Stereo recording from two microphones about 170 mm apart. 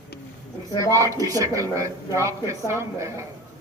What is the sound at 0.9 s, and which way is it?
A woman's voice, 20° right (ahead or behind).